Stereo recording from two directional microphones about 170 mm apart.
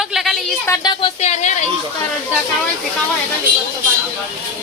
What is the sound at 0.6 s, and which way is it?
Speech, 20° left (ahead or behind).